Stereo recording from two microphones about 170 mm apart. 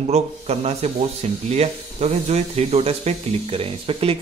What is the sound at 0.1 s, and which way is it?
Speech, 40° right (ahead or behind).